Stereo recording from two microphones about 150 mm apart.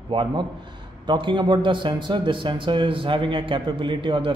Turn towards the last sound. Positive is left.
turn(degrees=-35)  # may be behind; listen again after turning